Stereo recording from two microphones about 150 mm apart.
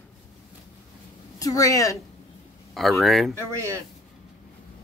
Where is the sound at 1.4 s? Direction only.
20° left (ahead or behind).